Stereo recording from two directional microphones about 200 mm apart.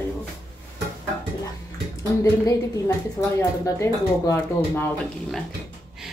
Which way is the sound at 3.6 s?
15° left (ahead or behind).